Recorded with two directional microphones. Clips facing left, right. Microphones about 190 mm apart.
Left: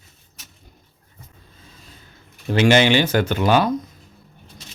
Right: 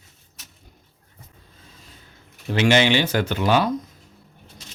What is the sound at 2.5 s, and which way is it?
Speech, 45° left (ahead or behind).